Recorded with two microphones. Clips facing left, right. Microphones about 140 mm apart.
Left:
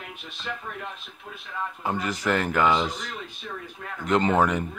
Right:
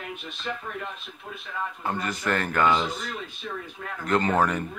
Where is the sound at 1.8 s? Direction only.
10° left (ahead or behind).